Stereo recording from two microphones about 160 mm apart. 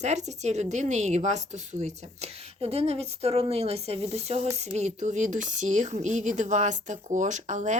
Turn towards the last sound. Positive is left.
turn(degrees=-50)  # may be behind; listen again after turning